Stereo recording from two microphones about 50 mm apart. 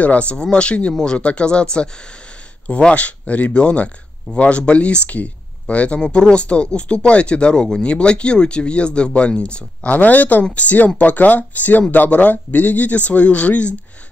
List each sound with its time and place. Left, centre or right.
0.0 s speech: left
5.9 s speech: centre